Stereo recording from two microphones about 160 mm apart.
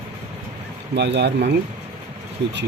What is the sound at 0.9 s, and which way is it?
Speech, 90° right.